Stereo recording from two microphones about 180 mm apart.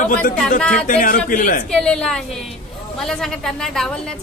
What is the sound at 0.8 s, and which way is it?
Speech, 50° left (ahead or behind).